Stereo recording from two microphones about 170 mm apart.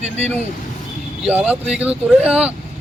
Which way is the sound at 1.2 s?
10° right (ahead or behind).